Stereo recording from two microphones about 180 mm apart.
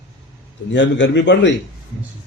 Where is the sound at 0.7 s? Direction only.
85° left.